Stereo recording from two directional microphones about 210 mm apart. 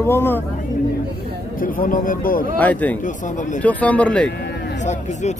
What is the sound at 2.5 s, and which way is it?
Speech, 10° left (ahead or behind).